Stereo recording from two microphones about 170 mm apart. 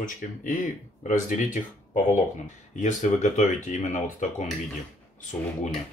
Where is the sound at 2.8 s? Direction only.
45° left (ahead or behind).